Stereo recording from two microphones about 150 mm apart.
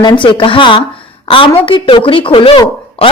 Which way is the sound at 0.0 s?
35° left (ahead or behind).